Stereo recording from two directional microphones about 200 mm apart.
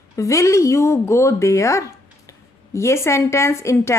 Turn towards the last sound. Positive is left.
turn(degrees=15)  # may be behind; listen again after turning